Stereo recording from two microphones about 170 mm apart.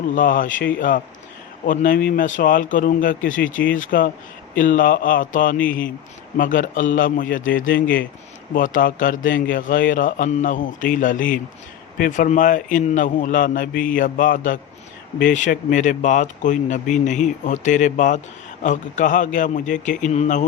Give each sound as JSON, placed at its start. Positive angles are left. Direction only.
{"t": 0.2, "sound": "speech", "side_deg": 55}
{"t": 5.5, "sound": "speech", "side_deg": 10}
{"t": 6.3, "sound": "speech", "side_deg": 50}